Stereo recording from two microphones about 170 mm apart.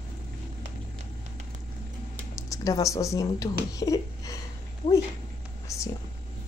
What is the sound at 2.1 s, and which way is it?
Speech, 20° left (ahead or behind).